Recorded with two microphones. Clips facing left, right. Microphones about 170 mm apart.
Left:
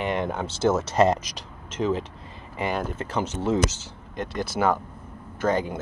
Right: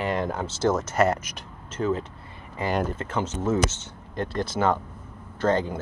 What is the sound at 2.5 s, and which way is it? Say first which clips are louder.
Speech: right 1 dB; 15° left (ahead or behind).